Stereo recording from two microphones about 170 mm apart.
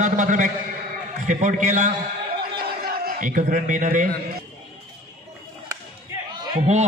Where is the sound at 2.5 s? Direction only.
60° right (ahead or behind).